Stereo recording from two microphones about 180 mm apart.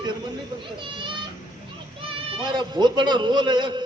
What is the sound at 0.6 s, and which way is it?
A child's voice, 25° right (ahead or behind).